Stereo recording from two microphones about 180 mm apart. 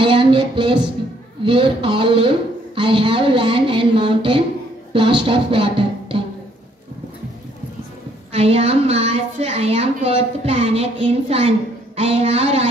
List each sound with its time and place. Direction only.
0.0 s music: 25° right (ahead or behind)
1.4 s a sound: 25° right (ahead or behind)
5.2 s music: 30° right (ahead or behind)
8.3 s a woman's voice: 35° right (ahead or behind)